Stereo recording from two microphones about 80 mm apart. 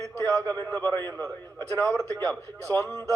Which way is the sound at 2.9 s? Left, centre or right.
Right.